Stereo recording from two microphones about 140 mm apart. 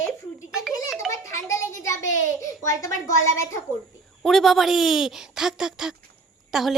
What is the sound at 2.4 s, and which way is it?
Speech, 20° left (ahead or behind).